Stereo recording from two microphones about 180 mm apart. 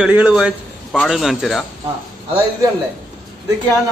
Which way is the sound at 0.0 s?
5° right (ahead or behind).